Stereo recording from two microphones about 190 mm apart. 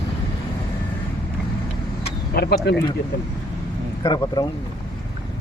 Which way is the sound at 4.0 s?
20° left (ahead or behind).